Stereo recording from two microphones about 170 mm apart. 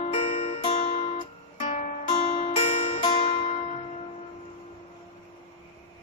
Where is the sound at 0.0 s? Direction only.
35° left (ahead or behind).